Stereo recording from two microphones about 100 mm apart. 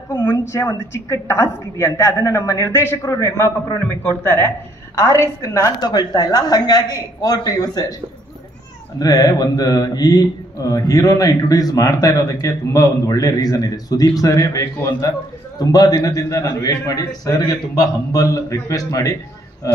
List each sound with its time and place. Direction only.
0.2 s a woman's voice: 25° left (ahead or behind)
5.8 s speech: 45° left (ahead or behind)
9.0 s speech: 35° left (ahead or behind)